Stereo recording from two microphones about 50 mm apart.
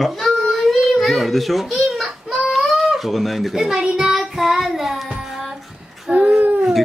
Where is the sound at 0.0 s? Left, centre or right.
Centre.